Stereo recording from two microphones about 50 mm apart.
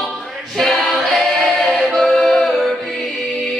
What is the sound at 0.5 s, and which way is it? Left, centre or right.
A capella, centre.